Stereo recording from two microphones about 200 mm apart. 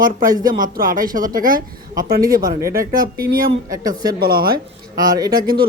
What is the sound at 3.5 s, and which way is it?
Speech, 20° right (ahead or behind).